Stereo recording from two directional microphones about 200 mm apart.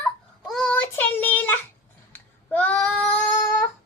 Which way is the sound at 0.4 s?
5° left (ahead or behind).